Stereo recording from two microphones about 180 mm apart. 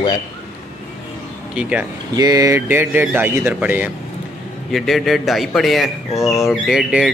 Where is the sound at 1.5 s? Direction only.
5° right (ahead or behind).